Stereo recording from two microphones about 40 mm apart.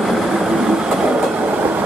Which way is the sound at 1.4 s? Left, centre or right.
Right.